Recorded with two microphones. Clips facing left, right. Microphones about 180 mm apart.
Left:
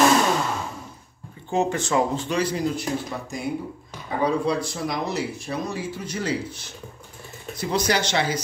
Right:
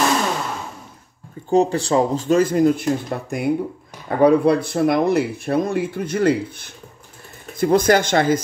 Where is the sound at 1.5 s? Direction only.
35° right (ahead or behind).